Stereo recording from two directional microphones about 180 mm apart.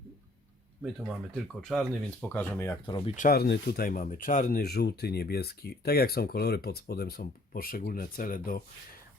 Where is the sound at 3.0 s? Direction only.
45° left (ahead or behind).